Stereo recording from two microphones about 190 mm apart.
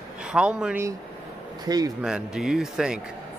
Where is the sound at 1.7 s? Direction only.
20° right (ahead or behind).